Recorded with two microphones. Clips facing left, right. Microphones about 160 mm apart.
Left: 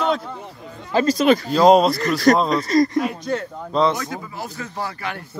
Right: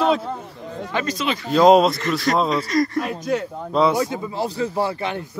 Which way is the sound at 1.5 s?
Centre (ahead or behind).